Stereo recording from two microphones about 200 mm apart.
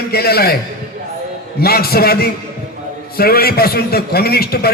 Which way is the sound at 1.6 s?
50° left (ahead or behind).